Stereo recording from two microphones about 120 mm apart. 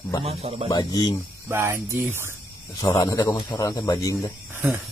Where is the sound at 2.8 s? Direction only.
30° left (ahead or behind).